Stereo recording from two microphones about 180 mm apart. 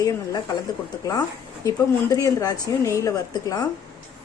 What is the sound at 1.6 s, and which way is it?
A woman's voice, 20° left (ahead or behind).